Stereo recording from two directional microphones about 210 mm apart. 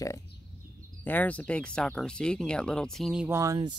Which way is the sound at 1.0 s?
10° left (ahead or behind).